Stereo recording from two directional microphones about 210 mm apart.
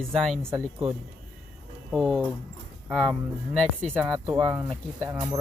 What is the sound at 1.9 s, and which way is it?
Speech, centre (ahead or behind).